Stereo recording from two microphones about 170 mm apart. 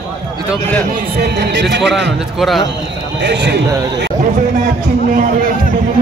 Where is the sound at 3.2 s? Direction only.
90° right.